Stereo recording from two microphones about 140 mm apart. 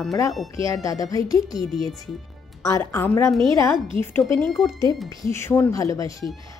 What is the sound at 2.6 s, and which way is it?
Speech, 20° left (ahead or behind).